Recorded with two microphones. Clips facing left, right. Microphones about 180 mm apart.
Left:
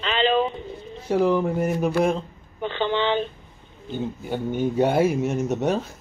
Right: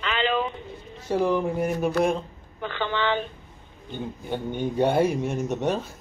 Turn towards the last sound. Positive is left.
turn(degrees=10)  # may be behind; listen again after turning